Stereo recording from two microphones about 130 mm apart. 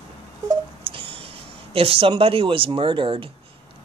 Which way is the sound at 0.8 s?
45° right (ahead or behind).